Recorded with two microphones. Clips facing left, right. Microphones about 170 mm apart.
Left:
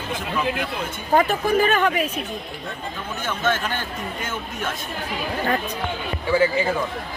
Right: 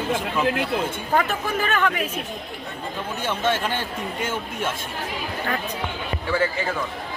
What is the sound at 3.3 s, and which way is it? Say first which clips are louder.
Speech: even; 30° right (ahead or behind).